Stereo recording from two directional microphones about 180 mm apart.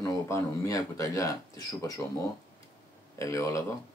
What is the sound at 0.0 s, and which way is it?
Speech, 15° left (ahead or behind).